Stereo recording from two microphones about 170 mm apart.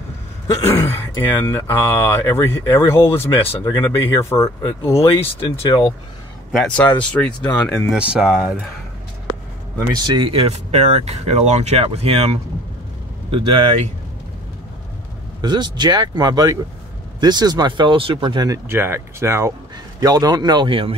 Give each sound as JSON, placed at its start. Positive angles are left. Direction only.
{"t": 0.6, "sound": "speech", "side_deg": 15}
{"t": 5.2, "sound": "speech", "side_deg": 30}
{"t": 6.5, "sound": "speech", "side_deg": 5}
{"t": 9.9, "sound": "speech", "side_deg": -25}
{"t": 15.4, "sound": "speech", "side_deg": -25}